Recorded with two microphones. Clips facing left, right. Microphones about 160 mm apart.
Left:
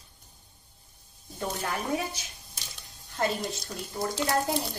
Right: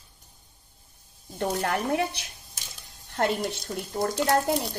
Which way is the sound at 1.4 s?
70° right (ahead or behind).